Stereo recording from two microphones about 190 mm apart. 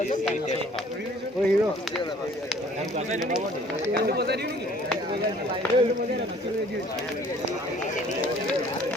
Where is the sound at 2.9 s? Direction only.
40° right (ahead or behind).